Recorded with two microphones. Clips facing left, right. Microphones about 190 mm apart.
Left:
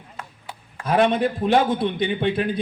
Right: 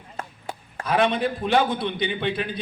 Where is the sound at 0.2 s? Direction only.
45° right (ahead or behind).